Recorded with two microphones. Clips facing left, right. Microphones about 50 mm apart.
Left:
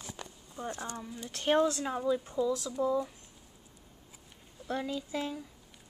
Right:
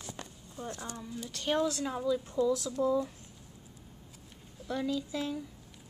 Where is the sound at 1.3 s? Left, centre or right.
Left.